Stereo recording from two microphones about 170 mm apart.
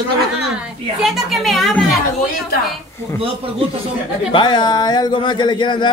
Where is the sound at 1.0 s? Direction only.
Centre (ahead or behind).